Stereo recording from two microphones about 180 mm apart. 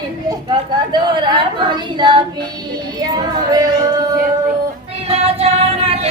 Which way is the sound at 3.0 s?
20° right (ahead or behind).